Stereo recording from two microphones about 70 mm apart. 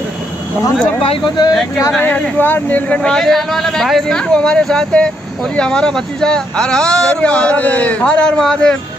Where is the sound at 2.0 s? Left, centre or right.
Left.